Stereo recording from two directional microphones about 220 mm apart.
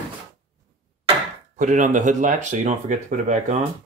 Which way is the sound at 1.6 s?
35° right (ahead or behind).